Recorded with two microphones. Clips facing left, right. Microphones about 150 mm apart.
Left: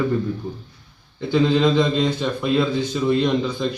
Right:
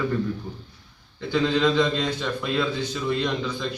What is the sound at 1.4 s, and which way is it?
A man's voice, 25° left (ahead or behind).